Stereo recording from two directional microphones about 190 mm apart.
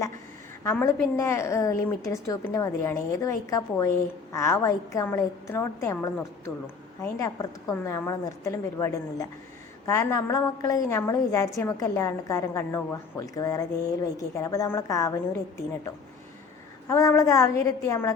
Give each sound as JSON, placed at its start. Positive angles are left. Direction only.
{"t": 0.6, "sound": "a woman's voice", "side_deg": 15}
{"t": 7.7, "sound": "a woman's voice", "side_deg": 15}
{"t": 16.9, "sound": "a woman's voice", "side_deg": 15}